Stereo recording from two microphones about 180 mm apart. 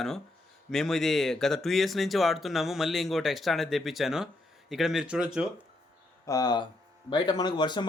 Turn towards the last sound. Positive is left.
turn(degrees=25)  # may be behind; listen again after turning